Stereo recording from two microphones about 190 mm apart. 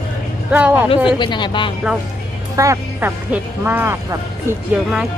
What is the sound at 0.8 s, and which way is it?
Speech, 25° left (ahead or behind).